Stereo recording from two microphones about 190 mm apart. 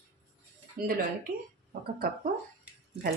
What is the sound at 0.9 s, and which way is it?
Speech, 50° right (ahead or behind).